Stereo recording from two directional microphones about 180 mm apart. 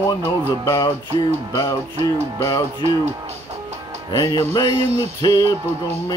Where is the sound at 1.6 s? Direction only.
25° left (ahead or behind).